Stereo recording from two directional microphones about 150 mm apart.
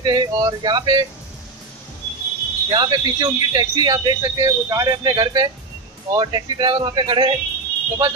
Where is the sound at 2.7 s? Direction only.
30° right (ahead or behind).